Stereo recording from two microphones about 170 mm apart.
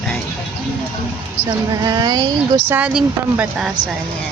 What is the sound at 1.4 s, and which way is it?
Speech, 25° right (ahead or behind).